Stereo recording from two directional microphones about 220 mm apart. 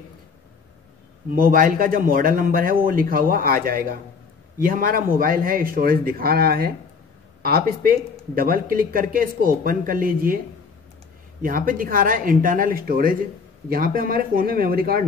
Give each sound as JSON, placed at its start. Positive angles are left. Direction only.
{"t": 1.3, "sound": "a man's voice", "side_deg": -40}
{"t": 11.4, "sound": "a man's voice", "side_deg": -40}